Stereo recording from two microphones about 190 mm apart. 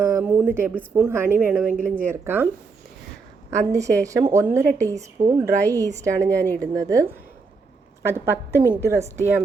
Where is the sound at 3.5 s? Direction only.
15° right (ahead or behind).